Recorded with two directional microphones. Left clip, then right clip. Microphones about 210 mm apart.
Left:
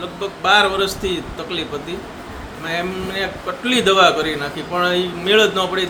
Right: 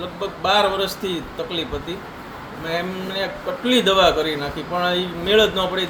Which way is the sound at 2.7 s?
15° left (ahead or behind).